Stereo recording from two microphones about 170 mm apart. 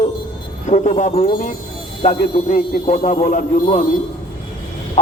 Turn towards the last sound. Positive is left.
turn(degrees=45)  # may be behind; listen again after turning